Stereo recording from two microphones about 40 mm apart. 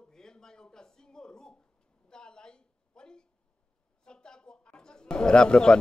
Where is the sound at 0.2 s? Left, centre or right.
Centre.